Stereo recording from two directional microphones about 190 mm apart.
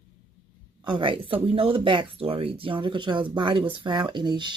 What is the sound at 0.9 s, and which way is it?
Speech, 25° right (ahead or behind).